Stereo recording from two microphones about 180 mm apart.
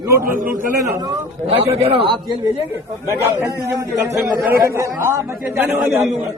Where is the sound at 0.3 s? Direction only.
50° right (ahead or behind).